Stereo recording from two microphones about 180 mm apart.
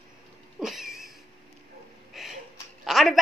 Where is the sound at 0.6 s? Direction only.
Centre (ahead or behind).